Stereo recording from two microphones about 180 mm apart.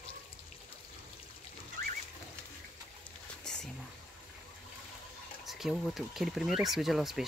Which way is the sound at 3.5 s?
5° left (ahead or behind).